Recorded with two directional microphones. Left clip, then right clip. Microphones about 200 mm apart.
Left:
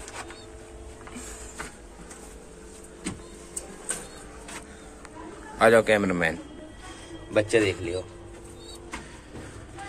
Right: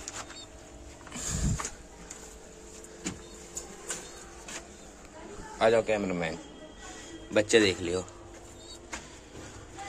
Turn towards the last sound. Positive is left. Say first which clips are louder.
# even
turn(degrees=-30)  # may be behind; listen again after turning